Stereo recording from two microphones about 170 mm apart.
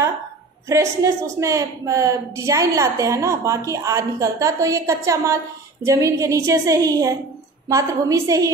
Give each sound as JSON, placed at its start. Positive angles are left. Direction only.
{"t": 0.7, "sound": "a woman's voice", "side_deg": -20}